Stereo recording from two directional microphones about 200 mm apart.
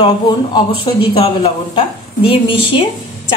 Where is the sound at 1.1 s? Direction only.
25° left (ahead or behind).